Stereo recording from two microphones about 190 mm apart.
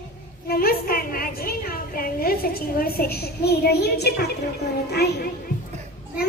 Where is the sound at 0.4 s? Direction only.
55° left (ahead or behind).